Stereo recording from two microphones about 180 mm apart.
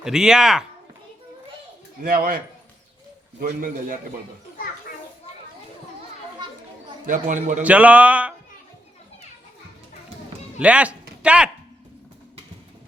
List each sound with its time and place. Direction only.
0.0 s speech: 5° right (ahead or behind)
2.0 s a man's voice: 55° right (ahead or behind)
3.4 s a man's voice: 50° right (ahead or behind)
7.0 s a man's voice: 45° right (ahead or behind)
7.6 s speech: 10° right (ahead or behind)
10.6 s speech: 5° right (ahead or behind)